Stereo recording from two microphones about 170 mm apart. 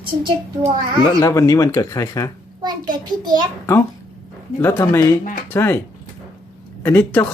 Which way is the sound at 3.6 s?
15° left (ahead or behind).